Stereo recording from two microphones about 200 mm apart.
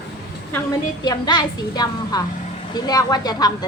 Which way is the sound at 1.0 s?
20° left (ahead or behind).